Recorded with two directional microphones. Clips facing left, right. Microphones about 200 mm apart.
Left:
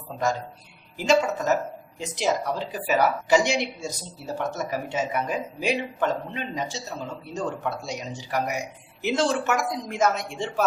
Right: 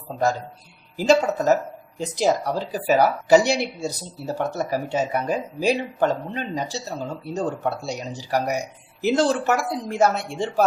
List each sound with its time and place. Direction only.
0.9 s speech: 35° right (ahead or behind)